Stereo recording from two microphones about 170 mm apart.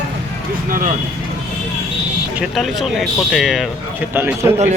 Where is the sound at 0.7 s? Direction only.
50° right (ahead or behind).